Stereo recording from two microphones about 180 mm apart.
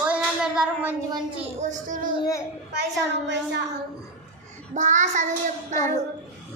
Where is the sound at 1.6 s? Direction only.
45° right (ahead or behind).